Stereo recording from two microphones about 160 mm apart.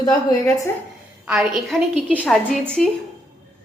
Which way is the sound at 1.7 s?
Centre (ahead or behind).